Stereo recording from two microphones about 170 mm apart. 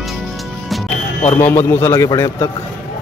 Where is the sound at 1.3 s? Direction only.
15° left (ahead or behind).